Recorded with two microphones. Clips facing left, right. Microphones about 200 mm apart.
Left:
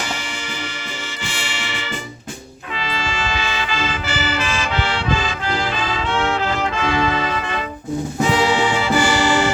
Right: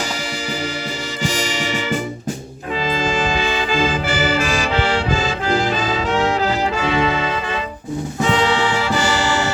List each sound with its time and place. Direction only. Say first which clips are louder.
1.2 s music: right 10 dB; 40° right (ahead or behind)
4.4 s brass instrument: right 4 dB; 35° right (ahead or behind)
6.9 s brass instrument: right 1 dB; 25° right (ahead or behind)
8.2 s music: even; 10° left (ahead or behind)